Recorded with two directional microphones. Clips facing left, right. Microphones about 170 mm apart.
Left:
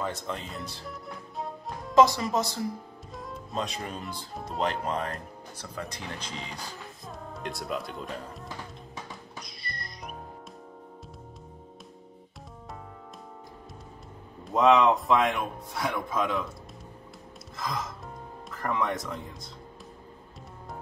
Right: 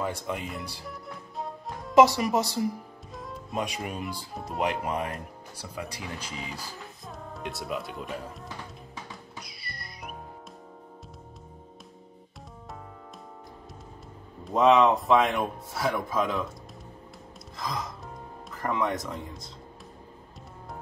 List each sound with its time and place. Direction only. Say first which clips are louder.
0.0 s speech: right 2 dB; 10° right (ahead or behind)
0.8 s music: even; centre (ahead or behind)
2.1 s speech: right 2 dB; 15° right (ahead or behind)
3.2 s music: even; centre (ahead or behind)
3.5 s speech: right 2 dB; 10° right (ahead or behind)
9.4 s music: left 2 dB; 5° right (ahead or behind)
14.4 s speech: right 1 dB; centre (ahead or behind)
17.6 s music: even; centre (ahead or behind)
18.5 s speech: right 1 dB; centre (ahead or behind)